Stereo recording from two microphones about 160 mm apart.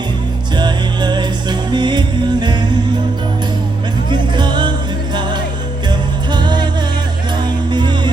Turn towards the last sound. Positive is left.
turn(degrees=-25)  # may be behind; listen again after turning